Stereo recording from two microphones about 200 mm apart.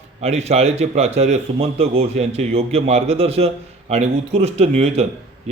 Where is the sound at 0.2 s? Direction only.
30° right (ahead or behind).